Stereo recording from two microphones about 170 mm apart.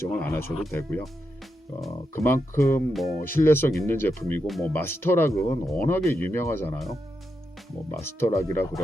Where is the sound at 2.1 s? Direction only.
15° left (ahead or behind).